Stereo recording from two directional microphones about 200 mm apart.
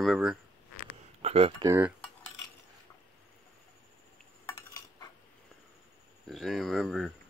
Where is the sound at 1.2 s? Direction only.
30° right (ahead or behind).